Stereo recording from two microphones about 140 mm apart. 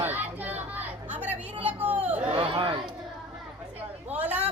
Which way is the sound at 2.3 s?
40° right (ahead or behind).